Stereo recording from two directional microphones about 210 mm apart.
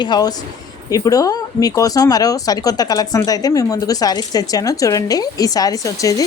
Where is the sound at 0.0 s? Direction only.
20° left (ahead or behind).